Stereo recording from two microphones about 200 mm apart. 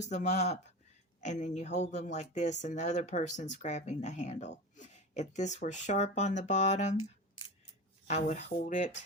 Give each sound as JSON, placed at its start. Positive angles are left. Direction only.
{"t": 0.0, "sound": "speech", "side_deg": 35}
{"t": 8.0, "sound": "speech", "side_deg": 35}